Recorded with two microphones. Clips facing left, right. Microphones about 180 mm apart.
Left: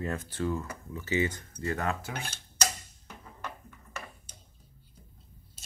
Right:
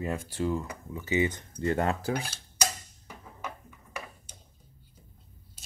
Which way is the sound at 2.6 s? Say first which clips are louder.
Right 1 dB; 5° right (ahead or behind).